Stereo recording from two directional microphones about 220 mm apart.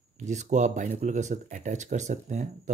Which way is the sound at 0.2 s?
30° right (ahead or behind).